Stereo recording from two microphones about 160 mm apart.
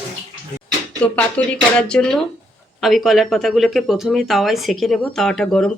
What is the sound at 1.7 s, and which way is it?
Speech, 5° left (ahead or behind).